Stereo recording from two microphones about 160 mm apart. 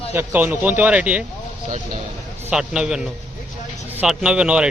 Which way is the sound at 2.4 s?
5° right (ahead or behind).